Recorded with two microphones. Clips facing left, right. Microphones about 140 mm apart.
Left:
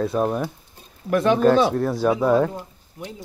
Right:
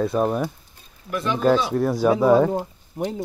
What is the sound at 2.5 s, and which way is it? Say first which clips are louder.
Speech: right 9 dB; 50° right (ahead or behind).